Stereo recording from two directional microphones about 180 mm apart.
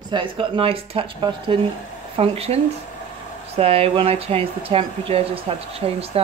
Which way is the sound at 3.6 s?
30° right (ahead or behind).